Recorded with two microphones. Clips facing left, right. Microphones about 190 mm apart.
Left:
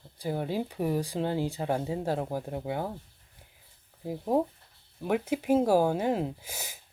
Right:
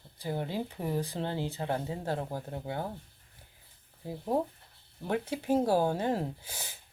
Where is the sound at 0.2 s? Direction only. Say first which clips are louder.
Left 3 dB; 15° left (ahead or behind).